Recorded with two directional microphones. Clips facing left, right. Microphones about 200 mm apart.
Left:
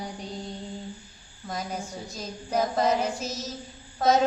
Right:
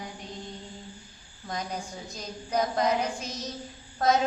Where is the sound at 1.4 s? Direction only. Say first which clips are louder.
Left 1 dB; 5° left (ahead or behind).